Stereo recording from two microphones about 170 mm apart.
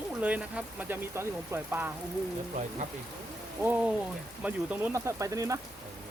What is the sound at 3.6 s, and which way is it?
Speech, 10° right (ahead or behind).